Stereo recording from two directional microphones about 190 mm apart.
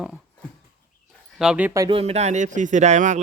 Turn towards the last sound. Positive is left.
turn(degrees=-40)  # may be behind; listen again after turning